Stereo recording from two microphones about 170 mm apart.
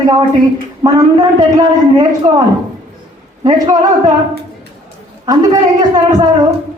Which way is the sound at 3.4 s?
25° right (ahead or behind).